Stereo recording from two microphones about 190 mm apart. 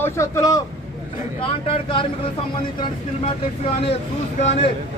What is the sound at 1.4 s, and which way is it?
Speech, 30° left (ahead or behind).